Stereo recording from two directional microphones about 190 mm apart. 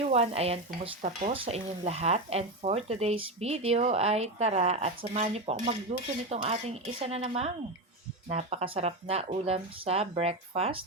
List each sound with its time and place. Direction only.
0.0 s speech: 35° right (ahead or behind)